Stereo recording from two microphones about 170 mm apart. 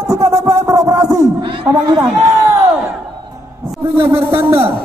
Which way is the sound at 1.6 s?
20° right (ahead or behind).